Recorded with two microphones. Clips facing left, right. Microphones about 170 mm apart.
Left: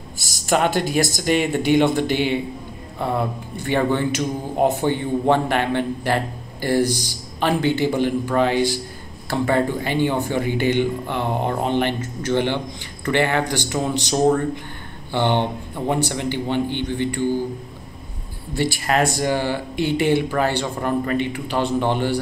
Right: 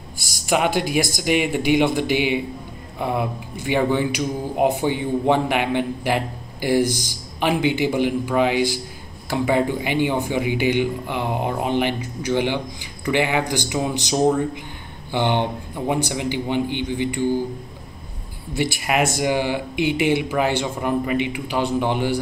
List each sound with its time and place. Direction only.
0.2 s speech: 10° right (ahead or behind)
18.6 s speech: 15° right (ahead or behind)